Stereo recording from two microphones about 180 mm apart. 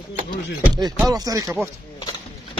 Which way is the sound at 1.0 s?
20° right (ahead or behind).